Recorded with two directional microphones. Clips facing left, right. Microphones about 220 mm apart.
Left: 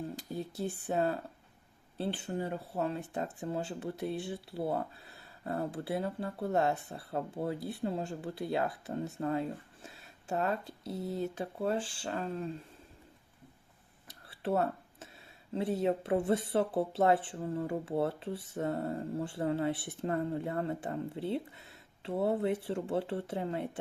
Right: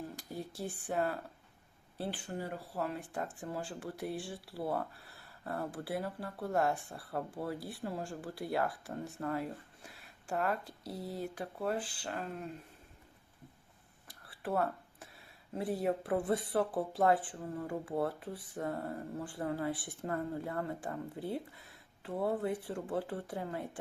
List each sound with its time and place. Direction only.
0.2 s speech: 20° left (ahead or behind)
14.1 s a sound: 25° left (ahead or behind)
15.5 s speech: 25° left (ahead or behind)